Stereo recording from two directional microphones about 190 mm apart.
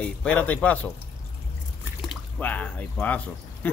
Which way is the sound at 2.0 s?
10° left (ahead or behind).